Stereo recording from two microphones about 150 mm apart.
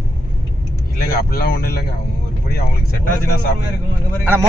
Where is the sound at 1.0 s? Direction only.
90° left.